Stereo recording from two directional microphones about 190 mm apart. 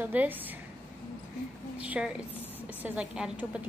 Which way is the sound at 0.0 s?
10° right (ahead or behind).